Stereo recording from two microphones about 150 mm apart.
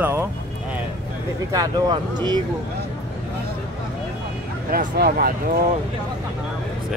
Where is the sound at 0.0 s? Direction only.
15° right (ahead or behind).